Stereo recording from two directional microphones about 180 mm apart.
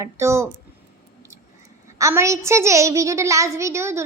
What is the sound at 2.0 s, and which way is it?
A child's voice, 15° right (ahead or behind).